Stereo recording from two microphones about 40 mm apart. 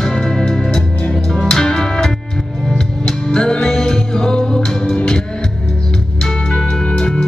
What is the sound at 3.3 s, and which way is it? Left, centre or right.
Music, centre.